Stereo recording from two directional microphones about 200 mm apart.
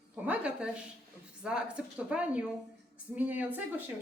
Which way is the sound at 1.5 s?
5° right (ahead or behind).